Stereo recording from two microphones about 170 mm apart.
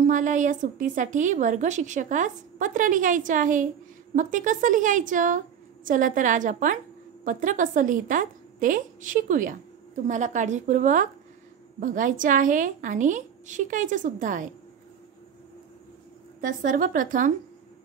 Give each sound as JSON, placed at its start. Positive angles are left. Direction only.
{"t": 0.0, "sound": "a woman's voice", "side_deg": -50}
{"t": 16.3, "sound": "a woman's voice", "side_deg": -55}